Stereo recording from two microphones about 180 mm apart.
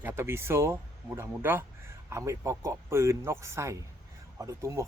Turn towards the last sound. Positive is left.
turn(degrees=-15)  # may be behind; listen again after turning